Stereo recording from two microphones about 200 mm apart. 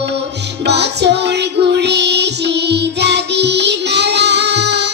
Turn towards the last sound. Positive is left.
turn(degrees=-60)  # may be behind; listen again after turning